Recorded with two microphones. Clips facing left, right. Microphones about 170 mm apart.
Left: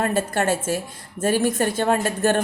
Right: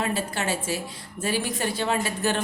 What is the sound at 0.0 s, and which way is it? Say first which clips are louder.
A woman's voice: left 6 dB; 50° left (ahead or behind).